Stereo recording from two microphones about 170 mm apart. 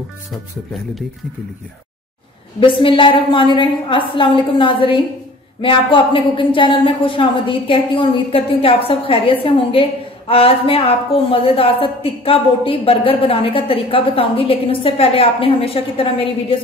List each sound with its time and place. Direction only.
2.8 s speech: 30° left (ahead or behind)